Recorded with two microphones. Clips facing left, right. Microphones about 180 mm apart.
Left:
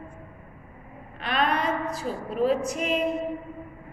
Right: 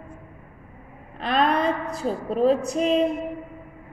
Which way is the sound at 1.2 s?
30° right (ahead or behind).